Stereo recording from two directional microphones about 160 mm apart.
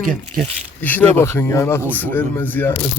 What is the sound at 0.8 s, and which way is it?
Speech, 10° left (ahead or behind).